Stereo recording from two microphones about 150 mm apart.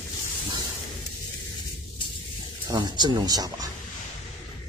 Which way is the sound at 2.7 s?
30° right (ahead or behind).